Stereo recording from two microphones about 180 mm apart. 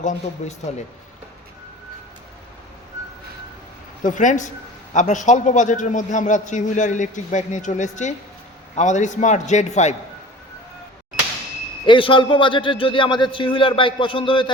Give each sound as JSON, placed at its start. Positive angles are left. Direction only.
{"t": 0.0, "sound": "a man's voice", "side_deg": 45}
{"t": 4.0, "sound": "a man's voice", "side_deg": 45}
{"t": 11.9, "sound": "a man's voice", "side_deg": 25}